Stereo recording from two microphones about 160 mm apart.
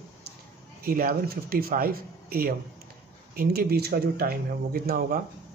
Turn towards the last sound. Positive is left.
turn(degrees=-65)  # may be behind; listen again after turning